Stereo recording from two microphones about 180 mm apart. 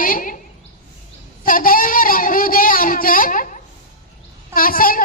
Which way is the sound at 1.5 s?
50° left (ahead or behind).